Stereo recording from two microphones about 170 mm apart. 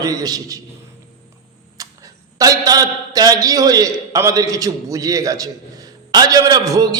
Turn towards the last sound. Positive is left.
turn(degrees=-20)  # may be behind; listen again after turning